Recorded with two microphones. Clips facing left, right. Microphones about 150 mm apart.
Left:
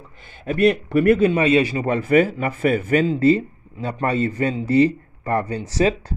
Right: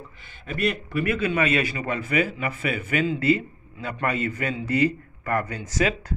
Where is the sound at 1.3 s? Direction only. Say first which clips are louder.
Left 6 dB; 30° left (ahead or behind).